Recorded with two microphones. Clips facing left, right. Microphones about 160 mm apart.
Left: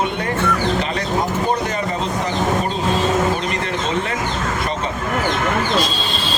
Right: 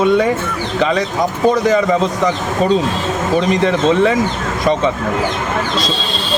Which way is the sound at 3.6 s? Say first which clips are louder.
Right 9 dB; 90° right.